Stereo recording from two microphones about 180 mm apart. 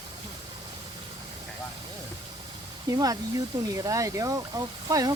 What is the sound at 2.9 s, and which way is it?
Speech, 20° right (ahead or behind).